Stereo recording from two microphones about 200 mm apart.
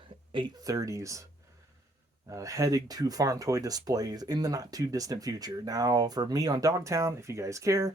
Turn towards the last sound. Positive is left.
turn(degrees=-15)  # may be behind; listen again after turning